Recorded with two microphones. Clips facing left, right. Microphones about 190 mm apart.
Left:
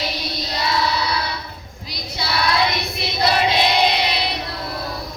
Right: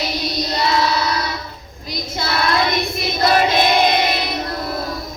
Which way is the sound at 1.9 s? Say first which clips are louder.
Right 4 dB; 45° right (ahead or behind).